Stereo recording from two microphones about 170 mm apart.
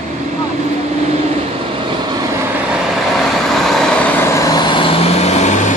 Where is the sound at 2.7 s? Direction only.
Centre (ahead or behind).